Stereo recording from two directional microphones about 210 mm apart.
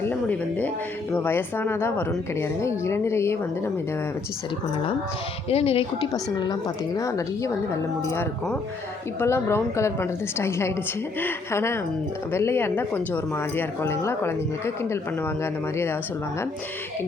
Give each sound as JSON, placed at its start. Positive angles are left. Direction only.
{"t": 0.0, "sound": "a woman's voice", "side_deg": 10}
{"t": 5.5, "sound": "speech", "side_deg": 30}
{"t": 6.4, "sound": "a woman's voice", "side_deg": 15}